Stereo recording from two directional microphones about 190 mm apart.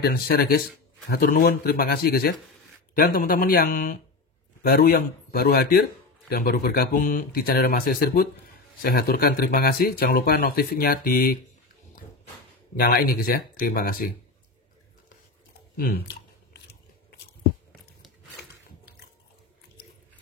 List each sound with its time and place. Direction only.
0.0 s speech: 55° left (ahead or behind)
12.7 s speech: 50° left (ahead or behind)
15.7 s speech: 50° left (ahead or behind)